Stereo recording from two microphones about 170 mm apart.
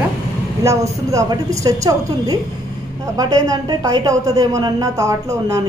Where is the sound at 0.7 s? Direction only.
20° right (ahead or behind).